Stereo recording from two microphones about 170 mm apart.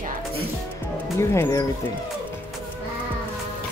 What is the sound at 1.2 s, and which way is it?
Speech, 15° left (ahead or behind).